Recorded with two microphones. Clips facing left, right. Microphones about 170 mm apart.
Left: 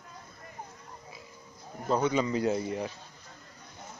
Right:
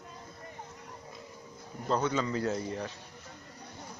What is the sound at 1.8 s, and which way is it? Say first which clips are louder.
A man's voice: left 3 dB; 10° left (ahead or behind).